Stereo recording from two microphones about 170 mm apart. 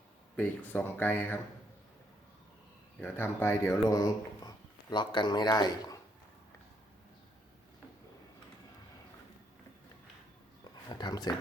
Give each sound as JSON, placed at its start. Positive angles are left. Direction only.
{"t": 0.3, "sound": "speech", "side_deg": 10}
{"t": 3.0, "sound": "speech", "side_deg": 15}
{"t": 10.6, "sound": "a sound", "side_deg": 25}